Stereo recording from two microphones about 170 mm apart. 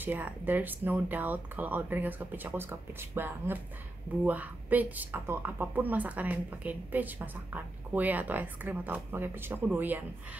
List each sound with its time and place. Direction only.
0.0 s a woman's voice: 10° right (ahead or behind)